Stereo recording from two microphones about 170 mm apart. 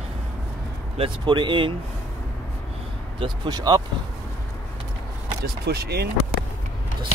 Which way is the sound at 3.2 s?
25° right (ahead or behind).